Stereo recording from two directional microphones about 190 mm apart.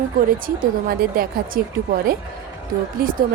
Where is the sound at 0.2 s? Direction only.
45° right (ahead or behind).